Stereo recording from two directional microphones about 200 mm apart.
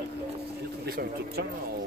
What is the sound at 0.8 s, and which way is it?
Speech, 50° right (ahead or behind).